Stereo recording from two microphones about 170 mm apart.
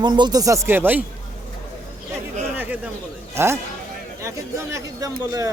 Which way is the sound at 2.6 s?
10° right (ahead or behind).